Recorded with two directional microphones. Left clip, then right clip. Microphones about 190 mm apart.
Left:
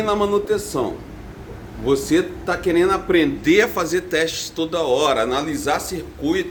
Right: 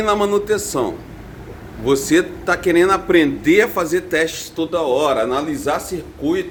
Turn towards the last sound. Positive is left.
turn(degrees=-20)  # may be behind; listen again after turning